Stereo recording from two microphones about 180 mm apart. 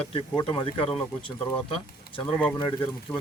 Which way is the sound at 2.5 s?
25° left (ahead or behind).